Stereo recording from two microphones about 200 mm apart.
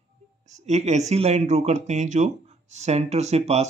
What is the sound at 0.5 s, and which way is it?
Speech, 35° right (ahead or behind).